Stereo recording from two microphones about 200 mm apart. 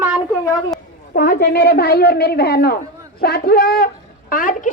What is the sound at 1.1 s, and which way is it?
A child's voice, 45° left (ahead or behind).